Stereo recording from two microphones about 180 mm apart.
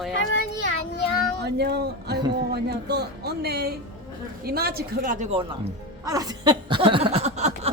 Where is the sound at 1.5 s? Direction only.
65° right (ahead or behind); by 5.3 s 50° right (ahead or behind).